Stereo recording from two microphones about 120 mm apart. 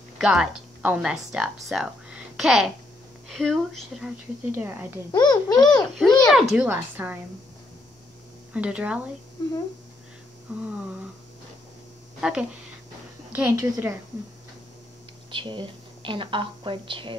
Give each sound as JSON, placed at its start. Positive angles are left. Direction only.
{"t": 0.2, "sound": "a woman's voice", "side_deg": -5}
{"t": 4.6, "sound": "a woman's voice", "side_deg": -20}
{"t": 5.1, "sound": "a child's voice", "side_deg": 35}
{"t": 5.9, "sound": "a woman's voice", "side_deg": 5}
{"t": 6.5, "sound": "a woman's voice", "side_deg": -15}
{"t": 8.5, "sound": "a woman's voice", "side_deg": -10}
{"t": 10.5, "sound": "a woman's voice", "side_deg": -10}
{"t": 12.2, "sound": "a woman's voice", "side_deg": -5}
{"t": 15.3, "sound": "a woman's voice", "side_deg": -45}